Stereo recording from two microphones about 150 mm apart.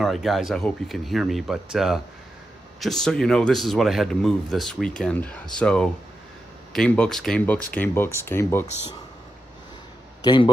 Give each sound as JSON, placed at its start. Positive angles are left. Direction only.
{"t": 0.0, "sound": "speech", "side_deg": 0}
{"t": 10.2, "sound": "a man's voice", "side_deg": 30}